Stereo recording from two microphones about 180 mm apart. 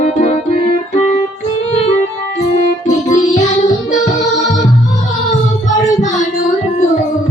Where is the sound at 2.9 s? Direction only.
40° left (ahead or behind).